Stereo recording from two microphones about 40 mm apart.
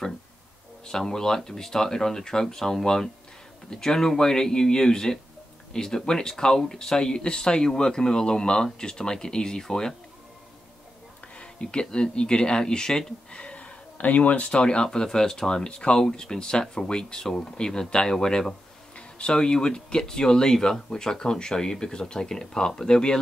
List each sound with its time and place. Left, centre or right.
0.8 s speech: centre
11.3 s speech: left
18.9 s speech: left